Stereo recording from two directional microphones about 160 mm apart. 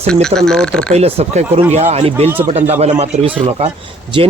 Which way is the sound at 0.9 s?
40° right (ahead or behind).